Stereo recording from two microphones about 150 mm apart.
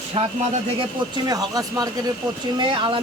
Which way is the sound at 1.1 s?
25° right (ahead or behind).